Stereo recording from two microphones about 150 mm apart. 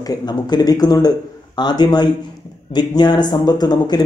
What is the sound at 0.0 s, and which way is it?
Speech, 25° left (ahead or behind).